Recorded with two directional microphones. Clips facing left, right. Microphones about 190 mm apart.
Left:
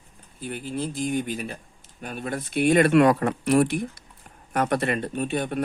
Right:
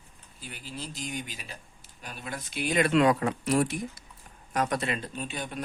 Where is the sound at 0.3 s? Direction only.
55° left (ahead or behind).